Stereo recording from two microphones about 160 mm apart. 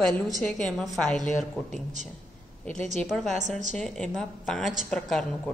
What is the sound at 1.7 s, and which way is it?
Speech, 50° right (ahead or behind).